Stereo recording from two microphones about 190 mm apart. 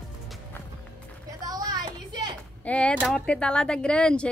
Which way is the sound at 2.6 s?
5° left (ahead or behind).